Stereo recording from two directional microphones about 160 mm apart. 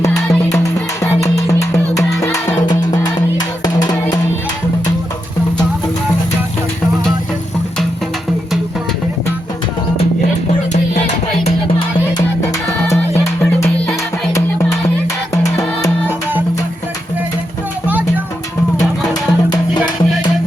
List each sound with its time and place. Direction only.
0.1 s music: 5° left (ahead or behind); by 3.9 s 25° left (ahead or behind)
10.7 s music: 45° left (ahead or behind)
13.0 s music: 10° left (ahead or behind)
15.4 s music: 20° left (ahead or behind)
18.8 s music: 25° left (ahead or behind)